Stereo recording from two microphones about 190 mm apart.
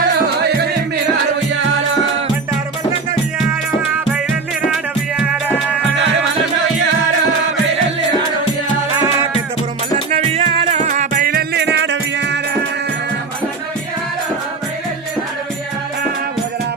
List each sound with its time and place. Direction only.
0.3 s music: 60° right (ahead or behind)
10.1 s music: 35° right (ahead or behind); by 12.4 s 70° right (ahead or behind)